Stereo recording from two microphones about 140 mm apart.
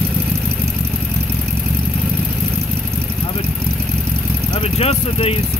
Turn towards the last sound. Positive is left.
turn(degrees=45)  # may be behind; listen again after turning